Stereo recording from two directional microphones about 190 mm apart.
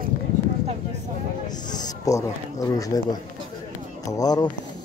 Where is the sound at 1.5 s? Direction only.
20° left (ahead or behind).